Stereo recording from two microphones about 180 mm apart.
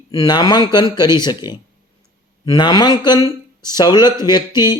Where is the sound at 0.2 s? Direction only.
20° left (ahead or behind).